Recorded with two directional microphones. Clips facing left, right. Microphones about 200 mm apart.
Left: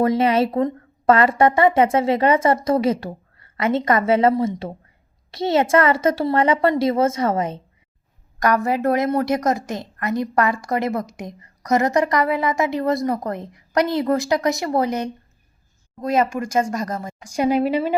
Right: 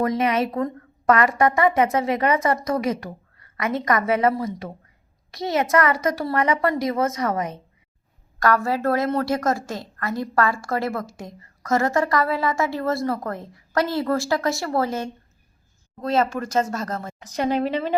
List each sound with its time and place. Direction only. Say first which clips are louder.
0.0 s a woman's voice: left 4 dB; 30° left (ahead or behind); by 17.9 s 10° left (ahead or behind)